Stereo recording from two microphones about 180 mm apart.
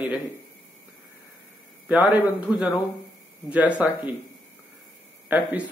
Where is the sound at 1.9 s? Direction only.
5° right (ahead or behind).